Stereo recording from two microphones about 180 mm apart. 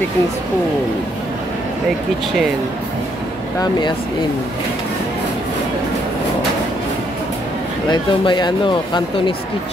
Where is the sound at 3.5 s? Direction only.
25° left (ahead or behind).